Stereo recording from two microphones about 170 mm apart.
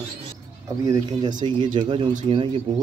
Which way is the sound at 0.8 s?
20° right (ahead or behind).